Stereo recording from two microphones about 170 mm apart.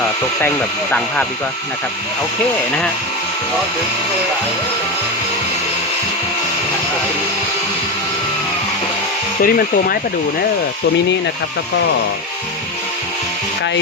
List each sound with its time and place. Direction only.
0.4 s speech: 10° left (ahead or behind)
9.4 s speech: 60° left (ahead or behind)